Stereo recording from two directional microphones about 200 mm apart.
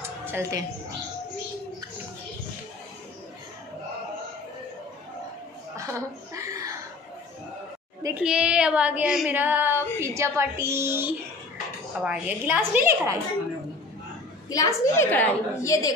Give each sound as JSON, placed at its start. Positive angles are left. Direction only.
{"t": 0.3, "sound": "a woman's voice", "side_deg": -15}
{"t": 5.8, "sound": "chuckle", "side_deg": -15}
{"t": 8.0, "sound": "a woman's voice", "side_deg": -5}
{"t": 14.5, "sound": "a woman's voice", "side_deg": 15}